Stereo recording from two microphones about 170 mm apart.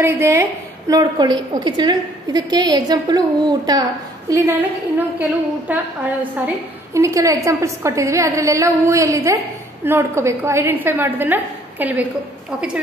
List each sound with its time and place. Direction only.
0.0 s a woman's voice: 15° right (ahead or behind)